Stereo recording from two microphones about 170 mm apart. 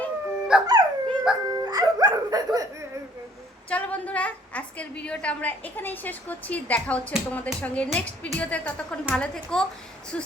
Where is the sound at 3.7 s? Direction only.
10° left (ahead or behind).